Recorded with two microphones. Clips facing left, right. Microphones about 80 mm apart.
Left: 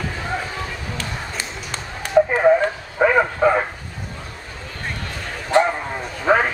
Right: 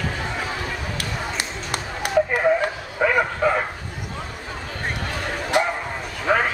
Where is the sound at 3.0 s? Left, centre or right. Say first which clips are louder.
Left 4 dB; centre.